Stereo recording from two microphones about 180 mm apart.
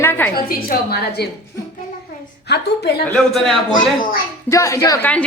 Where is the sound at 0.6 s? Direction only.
60° left (ahead or behind).